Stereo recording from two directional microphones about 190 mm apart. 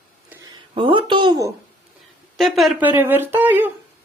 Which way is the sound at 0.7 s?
25° right (ahead or behind).